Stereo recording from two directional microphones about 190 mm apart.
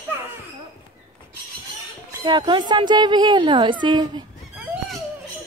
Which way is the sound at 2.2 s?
25° right (ahead or behind).